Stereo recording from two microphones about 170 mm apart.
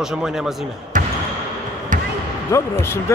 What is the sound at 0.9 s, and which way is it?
Basketball bounce, 50° right (ahead or behind).